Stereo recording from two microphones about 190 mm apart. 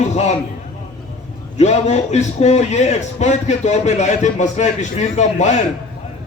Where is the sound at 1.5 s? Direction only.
35° left (ahead or behind).